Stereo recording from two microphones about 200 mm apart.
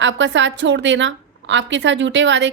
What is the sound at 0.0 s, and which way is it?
A woman's voice, 65° right (ahead or behind).